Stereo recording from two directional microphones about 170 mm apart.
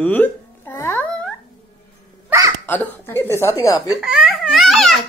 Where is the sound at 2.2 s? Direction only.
20° right (ahead or behind).